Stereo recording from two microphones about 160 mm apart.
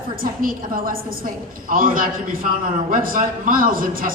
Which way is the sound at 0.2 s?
65° right (ahead or behind).